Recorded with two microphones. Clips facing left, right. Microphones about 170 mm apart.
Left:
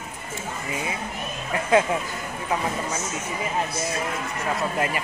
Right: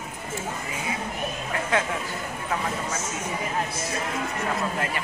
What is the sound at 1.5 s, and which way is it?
Speech, 20° left (ahead or behind).